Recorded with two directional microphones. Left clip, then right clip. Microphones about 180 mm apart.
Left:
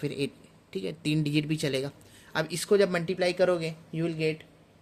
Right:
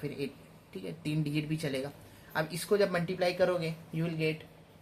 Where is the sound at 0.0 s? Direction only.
55° left (ahead or behind).